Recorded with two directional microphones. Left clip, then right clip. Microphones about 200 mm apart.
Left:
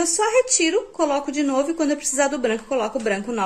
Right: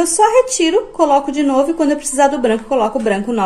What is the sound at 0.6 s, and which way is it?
A woman's voice, 15° left (ahead or behind).